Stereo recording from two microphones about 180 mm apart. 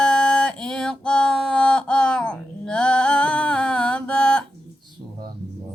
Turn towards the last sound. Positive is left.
turn(degrees=5)  # may be behind; listen again after turning